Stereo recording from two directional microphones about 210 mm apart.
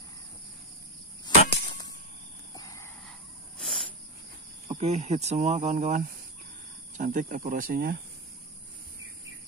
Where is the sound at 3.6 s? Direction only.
Centre (ahead or behind).